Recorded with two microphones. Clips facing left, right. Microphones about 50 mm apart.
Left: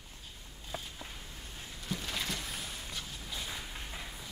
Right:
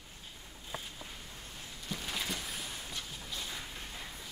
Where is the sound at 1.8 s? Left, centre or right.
Centre.